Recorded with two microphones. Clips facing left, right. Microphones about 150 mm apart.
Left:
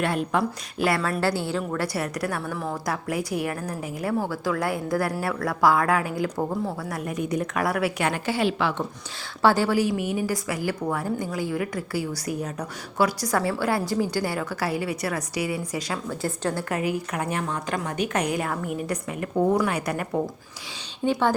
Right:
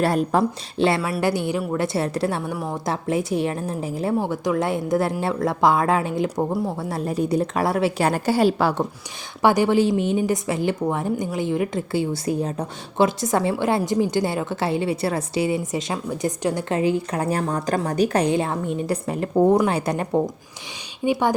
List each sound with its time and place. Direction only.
0.0 s a woman's voice: 40° right (ahead or behind)
1.0 s a woman's voice: 15° right (ahead or behind)
4.1 s a woman's voice: 15° right (ahead or behind)
6.2 s speech: 10° right (ahead or behind)
6.7 s a woman's voice: 25° right (ahead or behind)
9.4 s a woman's voice: 15° right (ahead or behind)
16.6 s a woman's voice: 25° right (ahead or behind)
21.0 s speech: 15° right (ahead or behind)